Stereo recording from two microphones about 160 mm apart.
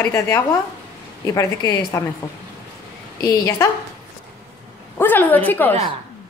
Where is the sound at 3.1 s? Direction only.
20° left (ahead or behind).